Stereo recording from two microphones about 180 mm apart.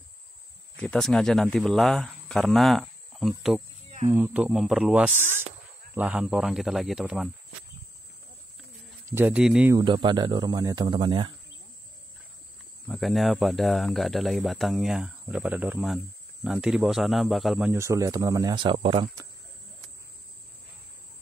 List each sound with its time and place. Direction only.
0.7 s speech: 5° left (ahead or behind)
9.1 s speech: 10° right (ahead or behind)
9.8 s speech: 25° right (ahead or behind)
12.8 s speech: centre (ahead or behind); by 19.0 s 30° right (ahead or behind)